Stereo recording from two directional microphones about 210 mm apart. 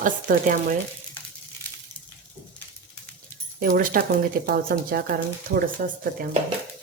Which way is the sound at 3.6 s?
40° right (ahead or behind).